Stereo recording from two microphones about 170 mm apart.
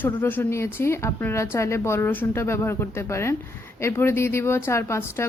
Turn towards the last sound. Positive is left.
turn(degrees=15)  # may be behind; listen again after turning